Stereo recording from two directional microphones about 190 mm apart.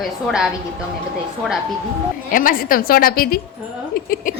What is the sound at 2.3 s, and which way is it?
A woman's voice, 45° left (ahead or behind).